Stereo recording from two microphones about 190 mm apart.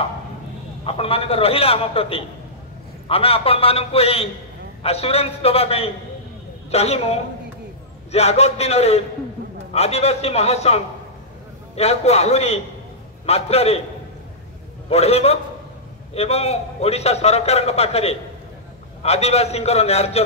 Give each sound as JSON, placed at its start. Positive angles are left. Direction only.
{"t": 0.8, "sound": "a man's voice", "side_deg": 30}
{"t": 14.9, "sound": "a man's voice", "side_deg": 35}